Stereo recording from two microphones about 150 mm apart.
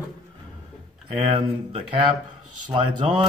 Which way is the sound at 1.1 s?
40° right (ahead or behind).